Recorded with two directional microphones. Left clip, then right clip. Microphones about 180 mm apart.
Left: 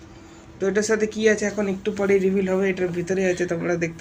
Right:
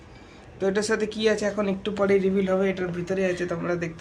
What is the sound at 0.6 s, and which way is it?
Speech, centre (ahead or behind).